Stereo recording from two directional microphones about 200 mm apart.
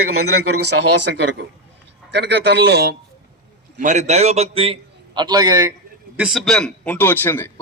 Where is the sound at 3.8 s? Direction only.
40° right (ahead or behind).